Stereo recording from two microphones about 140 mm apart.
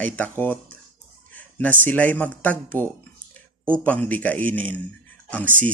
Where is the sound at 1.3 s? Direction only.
10° left (ahead or behind).